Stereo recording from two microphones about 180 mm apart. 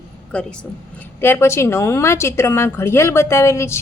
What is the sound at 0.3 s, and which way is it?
A woman's voice, 5° left (ahead or behind).